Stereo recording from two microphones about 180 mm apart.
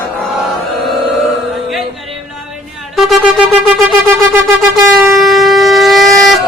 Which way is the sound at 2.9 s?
Centre (ahead or behind).